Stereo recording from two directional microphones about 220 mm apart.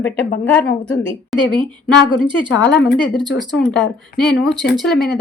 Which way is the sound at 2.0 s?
20° right (ahead or behind).